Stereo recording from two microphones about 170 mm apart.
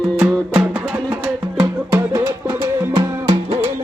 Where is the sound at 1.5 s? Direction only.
20° right (ahead or behind).